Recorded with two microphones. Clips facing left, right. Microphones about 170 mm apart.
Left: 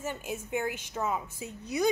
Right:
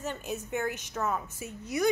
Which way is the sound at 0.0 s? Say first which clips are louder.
Right 1 dB; 10° left (ahead or behind).